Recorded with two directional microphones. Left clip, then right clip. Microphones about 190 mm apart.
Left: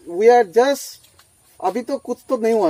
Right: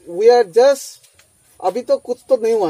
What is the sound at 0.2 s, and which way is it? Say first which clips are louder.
Speech: right 2 dB; 25° left (ahead or behind).